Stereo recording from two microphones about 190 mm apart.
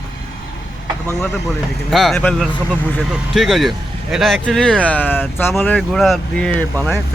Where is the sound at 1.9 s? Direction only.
Centre (ahead or behind).